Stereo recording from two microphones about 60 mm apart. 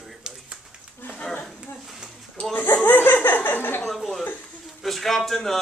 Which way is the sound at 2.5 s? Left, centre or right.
Left.